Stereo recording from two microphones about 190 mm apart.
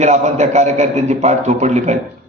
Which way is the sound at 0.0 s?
35° right (ahead or behind).